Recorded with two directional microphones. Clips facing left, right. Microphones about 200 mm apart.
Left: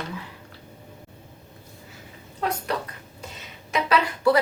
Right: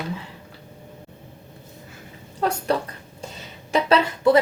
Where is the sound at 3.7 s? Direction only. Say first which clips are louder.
Right 4 dB; 30° right (ahead or behind).